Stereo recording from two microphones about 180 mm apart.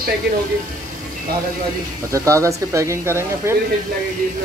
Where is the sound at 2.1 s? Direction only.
15° right (ahead or behind).